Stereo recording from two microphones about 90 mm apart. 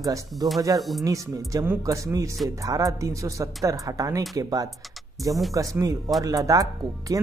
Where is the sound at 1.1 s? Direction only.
40° right (ahead or behind).